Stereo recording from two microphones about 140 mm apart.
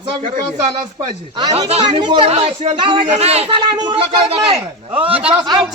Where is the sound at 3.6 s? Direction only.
35° right (ahead or behind).